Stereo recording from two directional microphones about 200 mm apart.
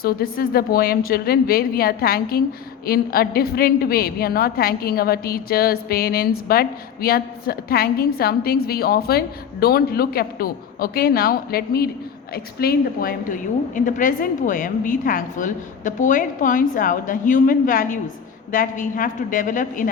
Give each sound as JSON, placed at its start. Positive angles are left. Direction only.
{"t": 0.0, "sound": "a woman's voice", "side_deg": 50}